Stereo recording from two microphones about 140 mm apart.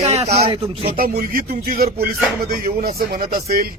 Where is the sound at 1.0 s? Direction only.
90° right.